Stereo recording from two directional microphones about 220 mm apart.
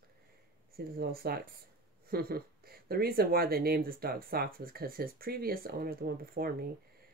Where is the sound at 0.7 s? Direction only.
45° right (ahead or behind).